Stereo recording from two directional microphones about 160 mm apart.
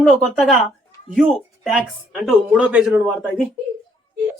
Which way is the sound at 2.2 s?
5° right (ahead or behind).